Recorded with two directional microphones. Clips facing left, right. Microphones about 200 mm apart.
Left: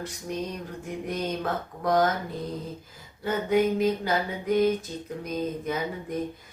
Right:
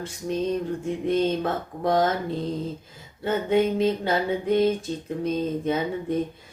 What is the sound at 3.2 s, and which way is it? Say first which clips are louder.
Mantra: right 2 dB; 25° right (ahead or behind).